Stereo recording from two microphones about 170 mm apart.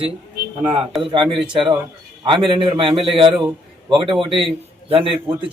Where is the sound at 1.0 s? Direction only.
30° right (ahead or behind).